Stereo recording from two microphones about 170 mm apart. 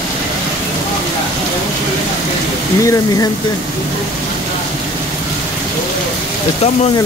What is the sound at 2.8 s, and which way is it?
Speech, 20° left (ahead or behind).